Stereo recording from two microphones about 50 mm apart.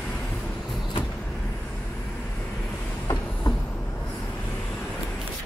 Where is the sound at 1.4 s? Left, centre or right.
Centre.